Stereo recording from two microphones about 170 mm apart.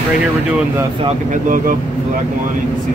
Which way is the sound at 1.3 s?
50° right (ahead or behind).